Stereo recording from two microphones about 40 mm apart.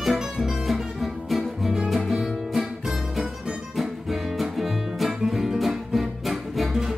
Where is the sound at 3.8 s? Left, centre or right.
Centre.